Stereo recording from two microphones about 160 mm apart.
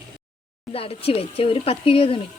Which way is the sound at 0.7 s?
35° left (ahead or behind).